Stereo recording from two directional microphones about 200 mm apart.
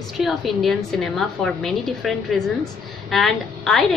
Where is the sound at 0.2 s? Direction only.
Centre (ahead or behind).